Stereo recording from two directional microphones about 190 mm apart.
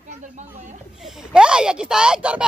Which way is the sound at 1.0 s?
Centre (ahead or behind).